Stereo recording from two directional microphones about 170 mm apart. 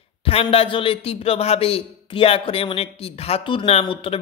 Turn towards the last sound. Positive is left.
turn(degrees=35)  # may be behind; listen again after turning